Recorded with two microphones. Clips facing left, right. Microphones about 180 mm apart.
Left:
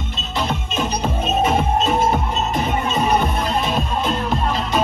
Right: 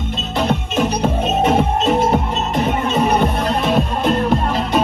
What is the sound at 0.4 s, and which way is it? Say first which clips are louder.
Music: right 5 dB; 60° right (ahead or behind).